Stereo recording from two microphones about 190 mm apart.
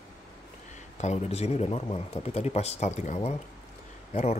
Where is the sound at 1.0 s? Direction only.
35° left (ahead or behind).